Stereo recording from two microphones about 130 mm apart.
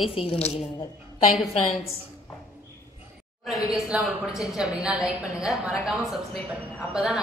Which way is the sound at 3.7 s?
5° right (ahead or behind).